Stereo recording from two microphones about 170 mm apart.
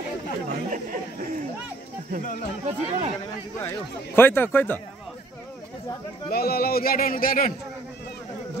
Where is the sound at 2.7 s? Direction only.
40° right (ahead or behind).